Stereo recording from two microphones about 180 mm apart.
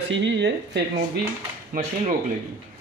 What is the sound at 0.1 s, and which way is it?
Speech, 85° right.